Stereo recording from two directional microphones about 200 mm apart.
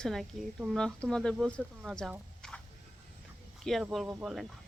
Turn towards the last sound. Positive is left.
turn(degrees=-5)  # may be behind; listen again after turning